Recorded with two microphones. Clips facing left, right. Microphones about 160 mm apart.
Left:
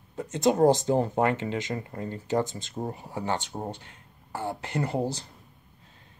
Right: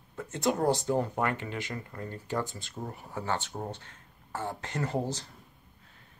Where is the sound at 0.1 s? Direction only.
20° left (ahead or behind).